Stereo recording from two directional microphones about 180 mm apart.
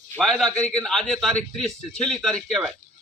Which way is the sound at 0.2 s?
Centre (ahead or behind).